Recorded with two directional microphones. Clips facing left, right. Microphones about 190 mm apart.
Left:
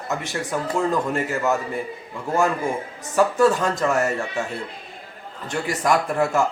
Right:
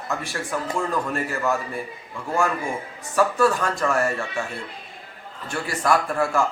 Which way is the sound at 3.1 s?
20° left (ahead or behind).